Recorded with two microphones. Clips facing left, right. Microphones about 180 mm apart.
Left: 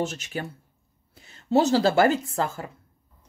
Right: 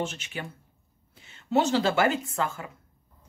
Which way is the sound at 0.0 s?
40° left (ahead or behind).